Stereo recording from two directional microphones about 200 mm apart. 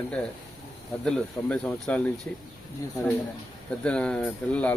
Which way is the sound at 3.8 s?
5° left (ahead or behind).